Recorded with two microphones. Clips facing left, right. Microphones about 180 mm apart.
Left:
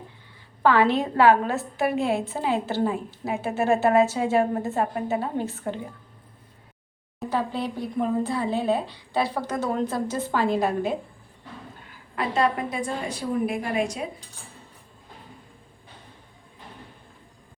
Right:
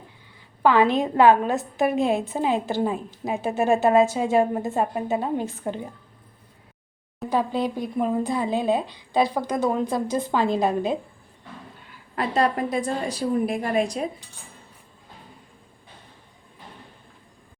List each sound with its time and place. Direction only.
0.6 s a woman's voice: 15° right (ahead or behind)
7.3 s a woman's voice: 15° right (ahead or behind)
12.1 s a woman's voice: 40° right (ahead or behind)